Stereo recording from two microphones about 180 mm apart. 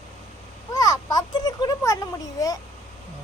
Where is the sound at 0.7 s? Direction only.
20° left (ahead or behind).